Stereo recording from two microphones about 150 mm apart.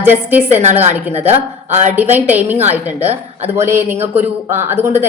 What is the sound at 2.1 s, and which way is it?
A man's voice, 10° right (ahead or behind).